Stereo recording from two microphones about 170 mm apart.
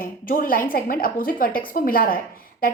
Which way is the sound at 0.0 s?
55° left (ahead or behind).